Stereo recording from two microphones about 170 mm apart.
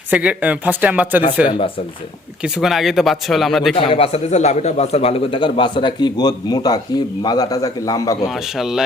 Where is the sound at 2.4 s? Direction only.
5° right (ahead or behind).